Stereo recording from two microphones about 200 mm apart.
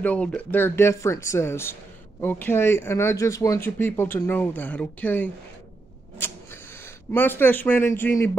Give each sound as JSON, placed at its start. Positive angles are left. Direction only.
{"t": 0.0, "sound": "speech", "side_deg": 5}
{"t": 6.1, "sound": "a sound", "side_deg": 10}
{"t": 7.1, "sound": "speech", "side_deg": 10}